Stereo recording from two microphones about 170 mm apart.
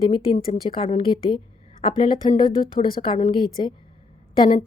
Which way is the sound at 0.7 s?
30° left (ahead or behind).